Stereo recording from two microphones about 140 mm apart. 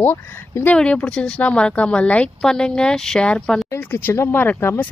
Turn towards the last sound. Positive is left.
turn(degrees=15)  # may be behind; listen again after turning